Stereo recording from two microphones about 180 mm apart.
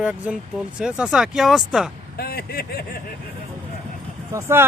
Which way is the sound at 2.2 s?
60° left (ahead or behind).